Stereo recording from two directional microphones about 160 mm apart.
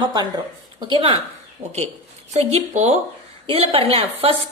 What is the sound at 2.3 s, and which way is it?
A woman's voice, 40° right (ahead or behind).